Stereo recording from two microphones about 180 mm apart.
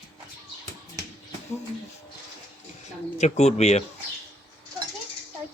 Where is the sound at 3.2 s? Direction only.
40° left (ahead or behind).